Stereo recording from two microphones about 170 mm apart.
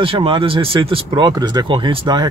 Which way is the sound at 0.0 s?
30° right (ahead or behind).